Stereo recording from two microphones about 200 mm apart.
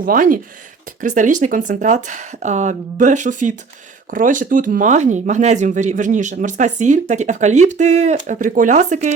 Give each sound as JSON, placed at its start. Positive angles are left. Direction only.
{"t": 0.0, "sound": "speech", "side_deg": -45}